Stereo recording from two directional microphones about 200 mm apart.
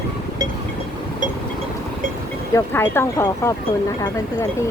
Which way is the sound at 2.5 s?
10° left (ahead or behind).